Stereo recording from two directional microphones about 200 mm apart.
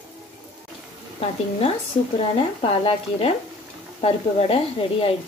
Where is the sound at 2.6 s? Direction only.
30° left (ahead or behind).